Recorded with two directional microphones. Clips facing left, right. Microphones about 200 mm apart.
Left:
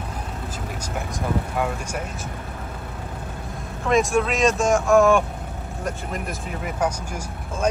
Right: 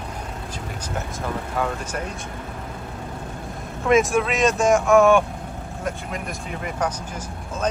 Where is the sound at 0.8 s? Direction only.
10° left (ahead or behind).